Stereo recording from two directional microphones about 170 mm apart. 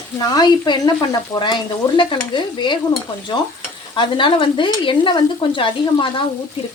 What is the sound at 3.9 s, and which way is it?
Stir, 30° left (ahead or behind).